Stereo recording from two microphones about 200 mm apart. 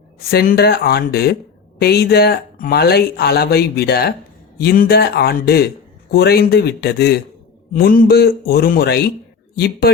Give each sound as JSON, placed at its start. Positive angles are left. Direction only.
{"t": 0.3, "sound": "speech", "side_deg": 50}